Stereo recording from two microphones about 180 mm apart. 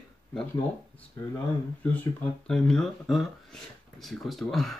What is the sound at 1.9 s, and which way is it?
Speech, 5° left (ahead or behind).